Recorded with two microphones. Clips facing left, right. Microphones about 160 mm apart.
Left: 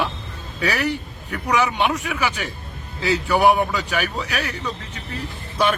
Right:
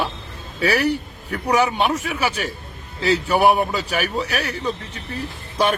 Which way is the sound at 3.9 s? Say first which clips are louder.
Right 2 dB; 40° right (ahead or behind).